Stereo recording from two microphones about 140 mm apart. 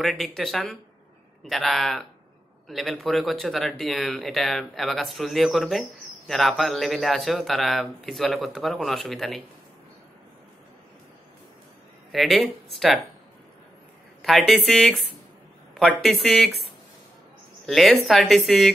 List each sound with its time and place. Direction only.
0.0 s speech: centre (ahead or behind)
12.1 s speech: centre (ahead or behind)
14.2 s speech: centre (ahead or behind)
17.6 s speech: centre (ahead or behind)